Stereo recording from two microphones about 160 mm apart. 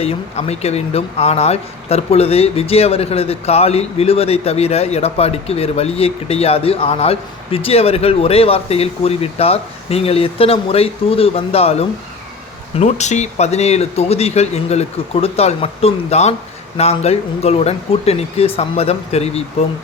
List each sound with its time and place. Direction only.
0.0 s speech: 40° left (ahead or behind)